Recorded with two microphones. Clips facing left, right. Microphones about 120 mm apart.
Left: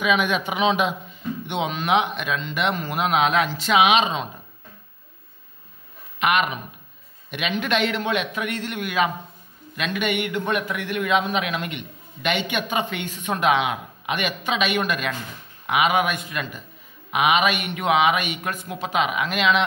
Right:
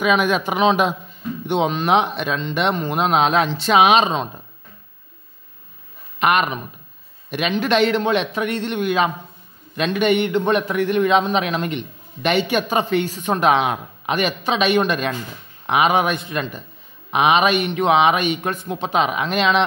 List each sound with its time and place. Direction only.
0.0 s a man's voice: 45° right (ahead or behind)
6.1 s a man's voice: 40° right (ahead or behind)